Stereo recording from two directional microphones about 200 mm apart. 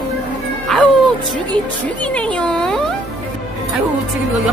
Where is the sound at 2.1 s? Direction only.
5° left (ahead or behind).